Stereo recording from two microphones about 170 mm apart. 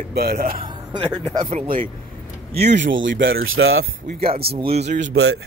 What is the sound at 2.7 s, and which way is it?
Speech, 90° right.